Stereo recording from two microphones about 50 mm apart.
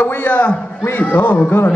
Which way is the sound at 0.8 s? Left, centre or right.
Left.